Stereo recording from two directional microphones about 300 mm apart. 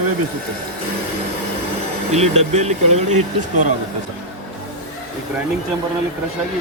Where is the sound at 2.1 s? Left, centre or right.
Right.